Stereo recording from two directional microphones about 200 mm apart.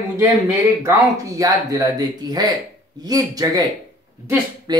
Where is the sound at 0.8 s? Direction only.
15° right (ahead or behind).